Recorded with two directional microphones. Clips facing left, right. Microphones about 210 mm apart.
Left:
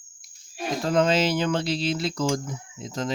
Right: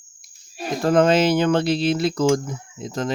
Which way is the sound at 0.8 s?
55° right (ahead or behind).